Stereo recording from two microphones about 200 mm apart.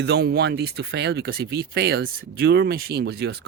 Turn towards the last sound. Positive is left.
turn(degrees=-55)  # may be behind; listen again after turning